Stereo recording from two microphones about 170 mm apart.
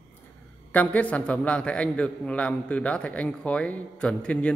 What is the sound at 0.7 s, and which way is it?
A man's voice, 10° left (ahead or behind).